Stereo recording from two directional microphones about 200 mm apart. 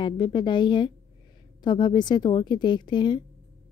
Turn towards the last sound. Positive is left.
turn(degrees=25)  # may be behind; listen again after turning